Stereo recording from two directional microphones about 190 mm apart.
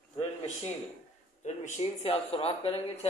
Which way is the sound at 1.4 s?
35° left (ahead or behind).